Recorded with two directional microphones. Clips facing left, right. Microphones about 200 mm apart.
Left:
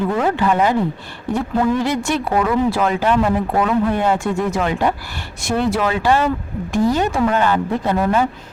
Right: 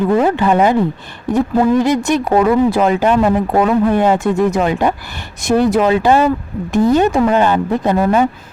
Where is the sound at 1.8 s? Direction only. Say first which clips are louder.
Right 5 dB; 20° right (ahead or behind).